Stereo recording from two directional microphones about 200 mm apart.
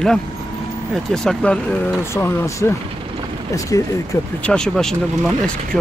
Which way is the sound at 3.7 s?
15° left (ahead or behind).